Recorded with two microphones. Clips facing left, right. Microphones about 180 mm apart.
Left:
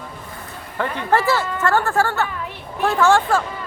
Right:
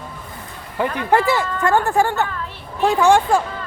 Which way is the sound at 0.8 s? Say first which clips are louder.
Right 2 dB; 15° right (ahead or behind).